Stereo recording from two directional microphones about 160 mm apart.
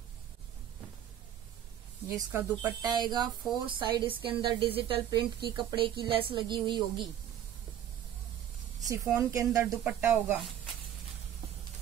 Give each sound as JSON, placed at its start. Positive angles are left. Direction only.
{"t": 2.0, "sound": "a woman's voice", "side_deg": -15}
{"t": 8.8, "sound": "a woman's voice", "side_deg": -20}